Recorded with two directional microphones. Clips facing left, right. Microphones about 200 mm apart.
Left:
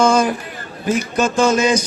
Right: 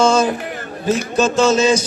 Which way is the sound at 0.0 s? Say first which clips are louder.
Even; 25° right (ahead or behind).